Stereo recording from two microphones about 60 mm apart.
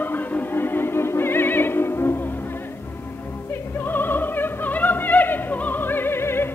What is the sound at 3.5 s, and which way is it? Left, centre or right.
Opera, left.